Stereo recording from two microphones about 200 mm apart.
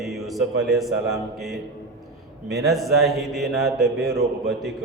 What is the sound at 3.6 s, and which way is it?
Mantra, 55° right (ahead or behind).